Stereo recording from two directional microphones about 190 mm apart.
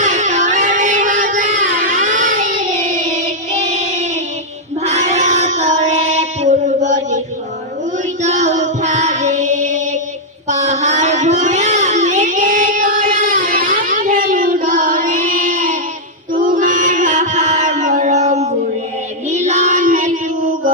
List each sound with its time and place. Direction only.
0.0 s music: 40° right (ahead or behind)
4.8 s child singing: 35° right (ahead or behind)
8.2 s music: 35° right (ahead or behind)
10.5 s child singing: 40° right (ahead or behind)
16.3 s mantra: 45° right (ahead or behind)
19.3 s a sound: 35° right (ahead or behind)